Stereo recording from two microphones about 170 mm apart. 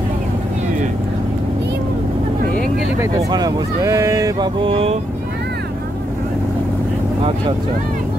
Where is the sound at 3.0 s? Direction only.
20° right (ahead or behind).